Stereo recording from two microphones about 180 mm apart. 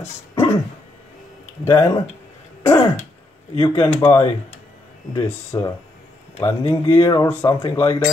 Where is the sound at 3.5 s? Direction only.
30° left (ahead or behind).